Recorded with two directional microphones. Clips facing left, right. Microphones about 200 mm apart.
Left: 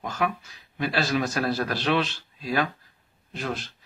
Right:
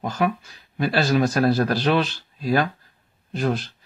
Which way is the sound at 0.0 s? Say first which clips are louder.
Right 4 dB; 30° right (ahead or behind).